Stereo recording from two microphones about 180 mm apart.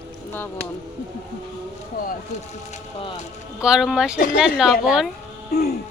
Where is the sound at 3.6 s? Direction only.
5° right (ahead or behind).